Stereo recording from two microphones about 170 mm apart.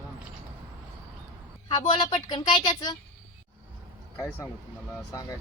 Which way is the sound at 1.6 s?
25° left (ahead or behind).